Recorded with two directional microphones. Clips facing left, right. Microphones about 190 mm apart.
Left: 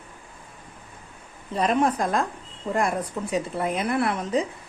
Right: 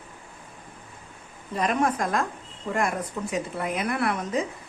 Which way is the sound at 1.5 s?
30° left (ahead or behind).